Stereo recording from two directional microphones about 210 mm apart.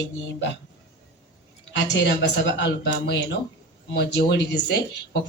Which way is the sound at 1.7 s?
55° left (ahead or behind).